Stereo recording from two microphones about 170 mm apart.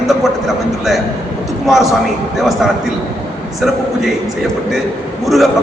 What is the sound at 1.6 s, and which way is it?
Speech, centre (ahead or behind).